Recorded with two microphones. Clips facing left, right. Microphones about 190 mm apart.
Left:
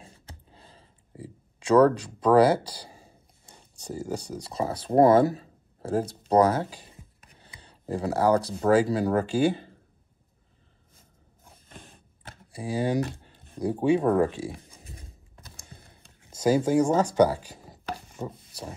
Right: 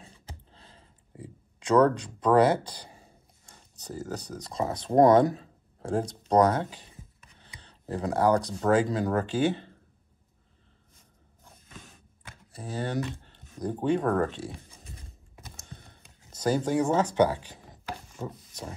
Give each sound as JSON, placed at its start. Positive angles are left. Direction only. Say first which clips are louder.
{"t": 1.1, "sound": "a sound", "louder": "left 2 dB", "side_deg": 5}
{"t": 2.0, "sound": "speech", "louder": "left 2 dB", "side_deg": 10}
{"t": 12.5, "sound": "speech", "louder": "left 5 dB", "side_deg": 10}
{"t": 16.3, "sound": "speech", "louder": "left 4 dB", "side_deg": 10}
{"t": 16.9, "sound": "speech", "louder": "even", "side_deg": 40}
{"t": 17.3, "sound": "speech", "louder": "left 2 dB", "side_deg": 10}